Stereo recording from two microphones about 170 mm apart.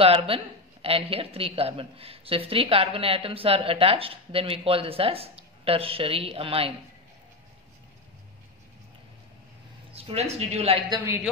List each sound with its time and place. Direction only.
0.0 s speech: 35° right (ahead or behind)
9.9 s speech: 35° right (ahead or behind)